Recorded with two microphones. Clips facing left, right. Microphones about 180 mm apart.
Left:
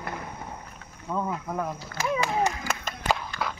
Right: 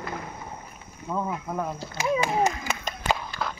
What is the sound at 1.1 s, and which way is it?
Cricket, 5° right (ahead or behind).